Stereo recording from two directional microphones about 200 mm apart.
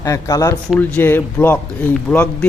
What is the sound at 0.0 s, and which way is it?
Speech, 15° left (ahead or behind).